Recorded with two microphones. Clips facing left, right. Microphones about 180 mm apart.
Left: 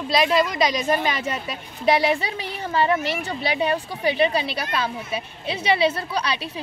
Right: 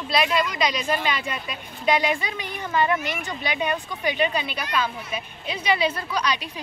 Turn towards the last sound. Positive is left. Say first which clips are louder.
# even
turn(degrees=30)  # may be behind; listen again after turning